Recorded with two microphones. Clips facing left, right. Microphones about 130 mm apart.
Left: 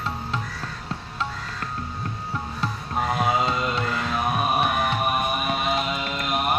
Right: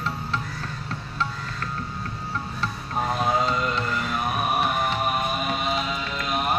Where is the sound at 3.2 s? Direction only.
15° left (ahead or behind).